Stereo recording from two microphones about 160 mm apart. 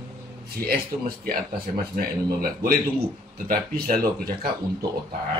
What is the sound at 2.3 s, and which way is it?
Speech, 65° right (ahead or behind).